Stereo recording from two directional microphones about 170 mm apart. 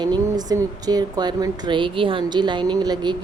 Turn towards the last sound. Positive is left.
turn(degrees=-25)  # may be behind; listen again after turning